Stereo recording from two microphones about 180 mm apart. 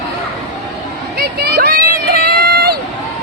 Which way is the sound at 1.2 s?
60° right (ahead or behind).